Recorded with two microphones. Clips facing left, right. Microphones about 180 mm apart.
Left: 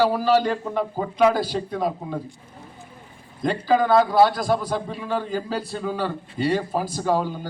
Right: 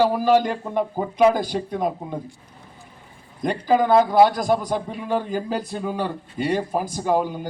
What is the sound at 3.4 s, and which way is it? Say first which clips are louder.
A man's voice: right 1 dB; 20° right (ahead or behind).